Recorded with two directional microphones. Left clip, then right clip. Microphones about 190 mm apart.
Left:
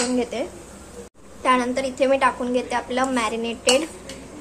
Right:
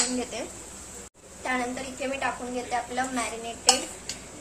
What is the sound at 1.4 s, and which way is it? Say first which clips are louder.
A woman's voice: left 10 dB; 55° left (ahead or behind).